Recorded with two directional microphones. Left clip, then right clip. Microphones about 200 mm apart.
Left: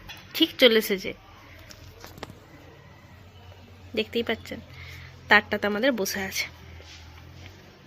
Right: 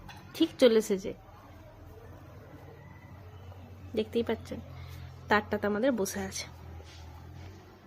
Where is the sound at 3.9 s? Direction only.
5° left (ahead or behind).